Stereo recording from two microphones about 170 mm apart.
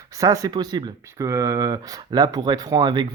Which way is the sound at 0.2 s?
20° right (ahead or behind).